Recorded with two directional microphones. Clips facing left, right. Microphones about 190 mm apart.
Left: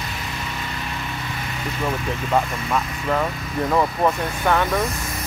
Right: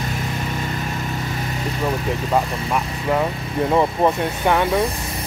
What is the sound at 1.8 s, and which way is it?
Speech, 10° right (ahead or behind).